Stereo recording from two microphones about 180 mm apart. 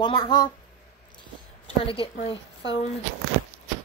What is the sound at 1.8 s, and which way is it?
Speech, 30° left (ahead or behind).